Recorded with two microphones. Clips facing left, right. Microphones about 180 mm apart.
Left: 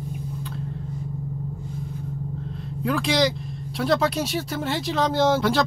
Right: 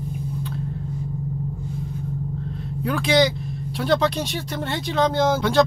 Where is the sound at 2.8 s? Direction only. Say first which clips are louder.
Right 2 dB; centre (ahead or behind).